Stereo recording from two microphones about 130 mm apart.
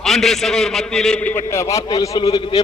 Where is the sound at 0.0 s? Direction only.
Centre (ahead or behind).